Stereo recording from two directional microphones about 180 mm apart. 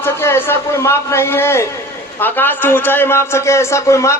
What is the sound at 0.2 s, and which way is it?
A man's voice, 15° left (ahead or behind).